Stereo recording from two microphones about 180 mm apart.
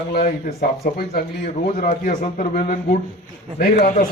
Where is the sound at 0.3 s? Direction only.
55° left (ahead or behind).